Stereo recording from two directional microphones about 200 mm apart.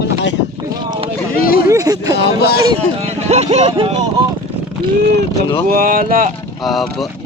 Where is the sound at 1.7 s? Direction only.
15° right (ahead or behind).